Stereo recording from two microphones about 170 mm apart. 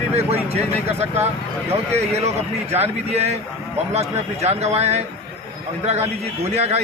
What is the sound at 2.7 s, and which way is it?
A man's voice, 40° right (ahead or behind).